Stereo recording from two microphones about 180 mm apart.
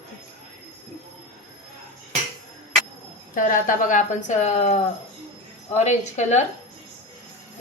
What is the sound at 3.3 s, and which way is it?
A woman's voice, 45° left (ahead or behind).